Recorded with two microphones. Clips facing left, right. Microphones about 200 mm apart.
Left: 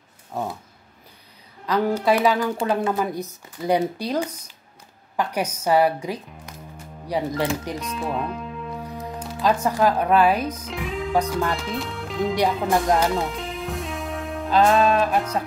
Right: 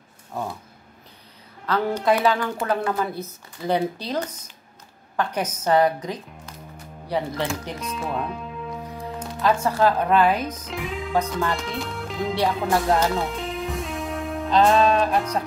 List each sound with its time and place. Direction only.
1.7 s a woman's voice: 10° left (ahead or behind)
7.8 s music: centre (ahead or behind)
9.4 s a woman's voice: 15° left (ahead or behind)
10.7 s music: centre (ahead or behind)
11.1 s a woman's voice: 10° left (ahead or behind)
11.4 s speech: centre (ahead or behind)
12.9 s music: centre (ahead or behind)